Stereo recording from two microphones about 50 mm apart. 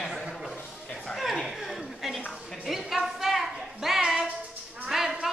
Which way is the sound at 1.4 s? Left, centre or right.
Centre.